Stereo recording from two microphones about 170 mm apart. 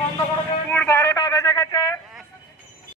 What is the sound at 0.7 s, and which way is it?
A man's voice, 10° left (ahead or behind).